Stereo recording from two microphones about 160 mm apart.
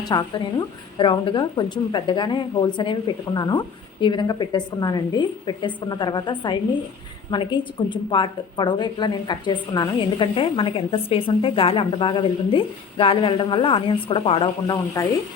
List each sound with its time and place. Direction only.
0.1 s a woman's voice: 30° left (ahead or behind)
15.0 s speech: 20° left (ahead or behind)